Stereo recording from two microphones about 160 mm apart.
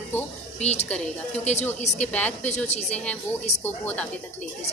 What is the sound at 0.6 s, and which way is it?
Speech, 45° left (ahead or behind).